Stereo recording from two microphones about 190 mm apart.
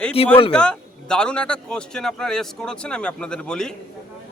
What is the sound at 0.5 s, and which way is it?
A man's voice, 5° left (ahead or behind).